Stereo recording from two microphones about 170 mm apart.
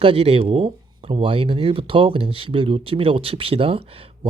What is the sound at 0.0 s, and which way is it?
Speech, 35° right (ahead or behind).